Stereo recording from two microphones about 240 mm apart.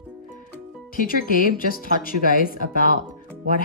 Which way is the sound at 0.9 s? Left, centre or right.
Left.